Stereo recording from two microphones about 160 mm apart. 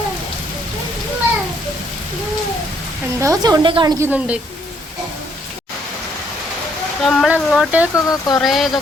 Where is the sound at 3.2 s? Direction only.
25° right (ahead or behind).